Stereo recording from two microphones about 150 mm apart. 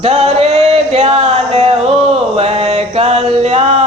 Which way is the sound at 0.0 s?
45° right (ahead or behind).